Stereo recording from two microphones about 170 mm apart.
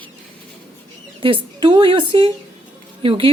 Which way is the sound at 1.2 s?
30° right (ahead or behind).